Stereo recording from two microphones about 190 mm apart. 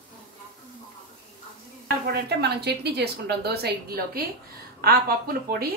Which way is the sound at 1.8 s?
60° right (ahead or behind).